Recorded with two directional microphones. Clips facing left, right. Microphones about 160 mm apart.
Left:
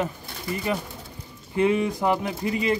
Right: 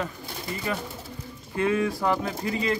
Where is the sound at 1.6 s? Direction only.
20° left (ahead or behind).